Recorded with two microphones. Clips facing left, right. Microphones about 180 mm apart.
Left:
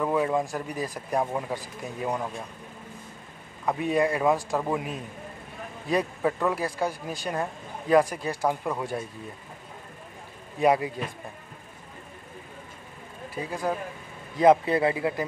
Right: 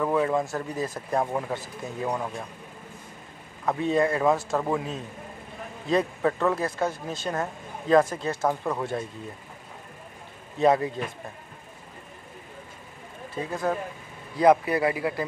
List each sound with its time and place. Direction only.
0.0 s speech: 10° left (ahead or behind)
3.6 s speech: 15° left (ahead or behind)
10.6 s speech: 10° left (ahead or behind)
13.3 s speech: 10° left (ahead or behind)
14.3 s a man's voice: 25° left (ahead or behind)